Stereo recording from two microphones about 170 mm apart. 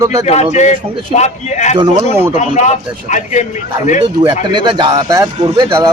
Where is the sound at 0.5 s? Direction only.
45° left (ahead or behind).